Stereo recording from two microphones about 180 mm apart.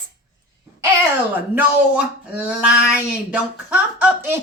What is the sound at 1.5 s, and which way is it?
A woman's voice, 5° right (ahead or behind).